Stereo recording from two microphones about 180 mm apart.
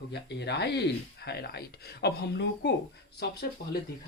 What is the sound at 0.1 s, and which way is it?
Speech, 65° left (ahead or behind).